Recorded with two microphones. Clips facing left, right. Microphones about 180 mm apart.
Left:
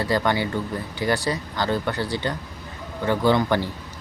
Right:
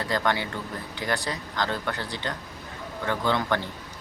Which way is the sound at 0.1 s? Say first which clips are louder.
Left 3 dB; 5° left (ahead or behind).